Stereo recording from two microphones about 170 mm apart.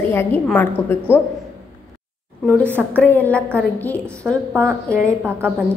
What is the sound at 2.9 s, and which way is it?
A woman's voice, 10° left (ahead or behind).